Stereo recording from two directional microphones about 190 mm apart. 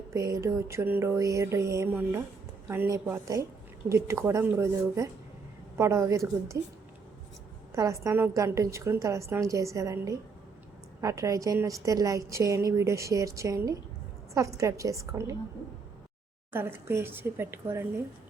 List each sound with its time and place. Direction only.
0.1 s a woman's voice: 15° right (ahead or behind)
7.7 s a woman's voice: 15° right (ahead or behind)
16.5 s a woman's voice: 10° right (ahead or behind)